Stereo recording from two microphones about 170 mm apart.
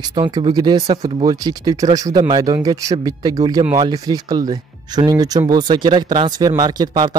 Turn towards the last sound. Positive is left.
turn(degrees=-25)  # may be behind; listen again after turning